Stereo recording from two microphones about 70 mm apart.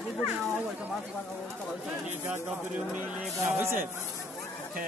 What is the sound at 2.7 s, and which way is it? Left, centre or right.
Speech, centre.